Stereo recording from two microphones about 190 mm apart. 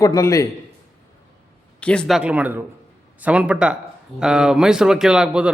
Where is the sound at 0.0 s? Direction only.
15° left (ahead or behind).